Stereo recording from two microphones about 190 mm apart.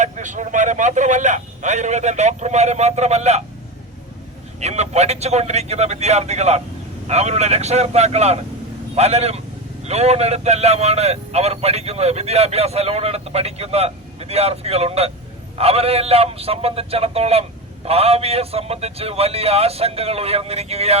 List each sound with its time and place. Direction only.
0.0 s speech: 40° right (ahead or behind)
4.6 s speech: 35° right (ahead or behind)